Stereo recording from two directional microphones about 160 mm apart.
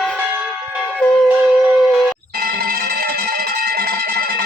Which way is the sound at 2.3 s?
70° right (ahead or behind).